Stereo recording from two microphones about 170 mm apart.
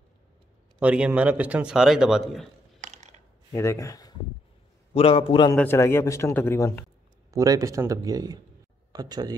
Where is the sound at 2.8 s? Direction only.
45° right (ahead or behind).